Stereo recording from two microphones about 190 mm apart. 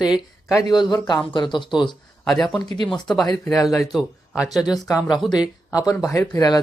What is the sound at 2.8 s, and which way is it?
A man's voice, centre (ahead or behind).